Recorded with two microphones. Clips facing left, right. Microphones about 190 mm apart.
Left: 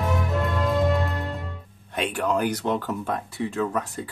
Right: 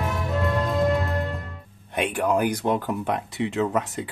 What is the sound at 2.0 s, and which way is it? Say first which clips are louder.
Speech: right 2 dB; 15° right (ahead or behind).